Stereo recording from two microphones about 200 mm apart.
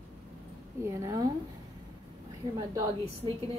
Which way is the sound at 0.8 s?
15° right (ahead or behind).